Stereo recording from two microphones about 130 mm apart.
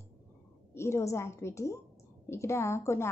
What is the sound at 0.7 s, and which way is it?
Speech, 20° left (ahead or behind).